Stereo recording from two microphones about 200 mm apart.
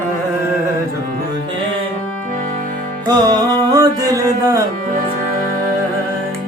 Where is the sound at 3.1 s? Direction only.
20° right (ahead or behind).